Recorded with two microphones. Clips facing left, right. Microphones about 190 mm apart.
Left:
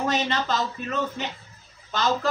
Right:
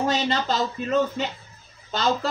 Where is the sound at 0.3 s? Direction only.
35° right (ahead or behind).